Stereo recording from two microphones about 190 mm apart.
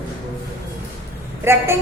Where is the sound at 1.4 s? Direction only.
15° right (ahead or behind).